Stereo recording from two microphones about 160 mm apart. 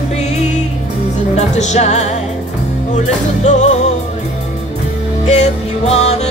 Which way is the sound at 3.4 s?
45° left (ahead or behind).